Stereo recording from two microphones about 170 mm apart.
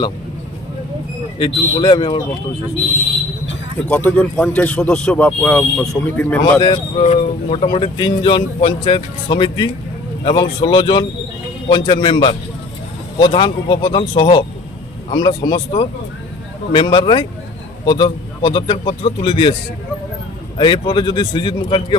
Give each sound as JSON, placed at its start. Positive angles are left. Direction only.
{"t": 1.4, "sound": "speech", "side_deg": 25}
{"t": 3.8, "sound": "speech", "side_deg": 10}
{"t": 6.6, "sound": "speech", "side_deg": 30}
{"t": 20.6, "sound": "speech", "side_deg": 25}